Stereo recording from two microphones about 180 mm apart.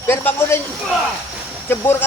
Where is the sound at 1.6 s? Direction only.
15° left (ahead or behind).